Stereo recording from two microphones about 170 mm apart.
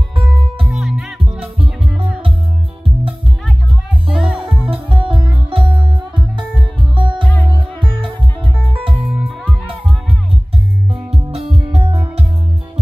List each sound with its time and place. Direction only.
0.7 s music: 5° right (ahead or behind)
4.1 s music: 5° right (ahead or behind)
4.8 s music: 30° right (ahead or behind)
9.0 s music: 10° right (ahead or behind)
10.9 s music: 35° right (ahead or behind)